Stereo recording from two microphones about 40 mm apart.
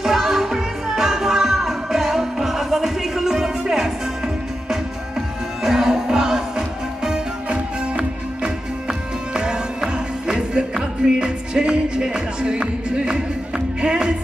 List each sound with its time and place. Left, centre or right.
0.0 s music: centre
5.6 s music: centre